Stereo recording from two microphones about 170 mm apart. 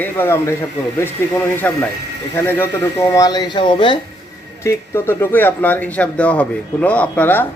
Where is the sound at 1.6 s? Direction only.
10° left (ahead or behind); by 4.0 s 30° left (ahead or behind).